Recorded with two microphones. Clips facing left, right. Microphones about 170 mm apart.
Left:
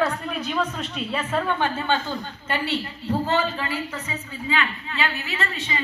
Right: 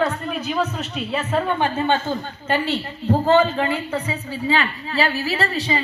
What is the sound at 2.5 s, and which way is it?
A woman's voice, 30° right (ahead or behind).